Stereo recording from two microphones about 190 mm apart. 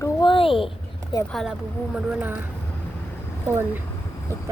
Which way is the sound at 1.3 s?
Centre (ahead or behind).